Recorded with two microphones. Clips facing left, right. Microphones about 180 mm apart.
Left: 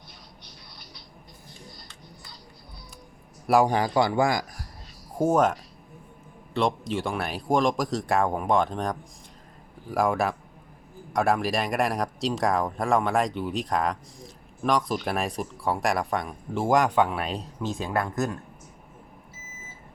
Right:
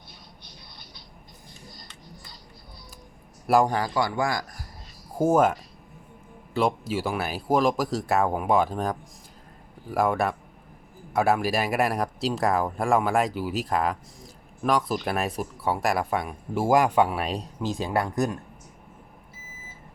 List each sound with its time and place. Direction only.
3.4 s speech: centre (ahead or behind)
3.7 s speech: 20° left (ahead or behind)
5.1 s speech: 5° right (ahead or behind)
17.3 s speech: 35° right (ahead or behind)
17.8 s speech: 15° right (ahead or behind)